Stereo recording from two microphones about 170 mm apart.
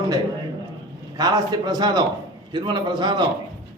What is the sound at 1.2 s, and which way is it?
A man's voice, 25° right (ahead or behind).